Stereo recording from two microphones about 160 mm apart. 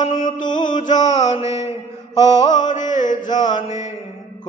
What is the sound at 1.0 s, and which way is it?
Music, 25° left (ahead or behind).